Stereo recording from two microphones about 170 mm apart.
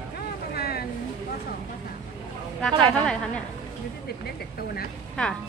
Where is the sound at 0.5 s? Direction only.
65° left (ahead or behind).